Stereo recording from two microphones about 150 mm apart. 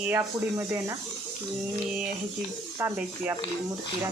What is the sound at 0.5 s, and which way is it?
Speech, 25° right (ahead or behind).